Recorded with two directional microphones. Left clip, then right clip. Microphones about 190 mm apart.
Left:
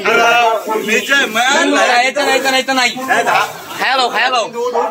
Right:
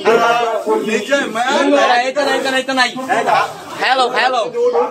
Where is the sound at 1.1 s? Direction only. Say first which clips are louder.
Left 5 dB; 25° right (ahead or behind).